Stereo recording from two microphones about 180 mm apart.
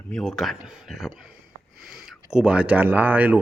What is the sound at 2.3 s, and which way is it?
Speech, 5° right (ahead or behind).